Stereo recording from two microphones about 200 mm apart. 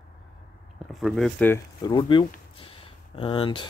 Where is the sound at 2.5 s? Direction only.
25° left (ahead or behind).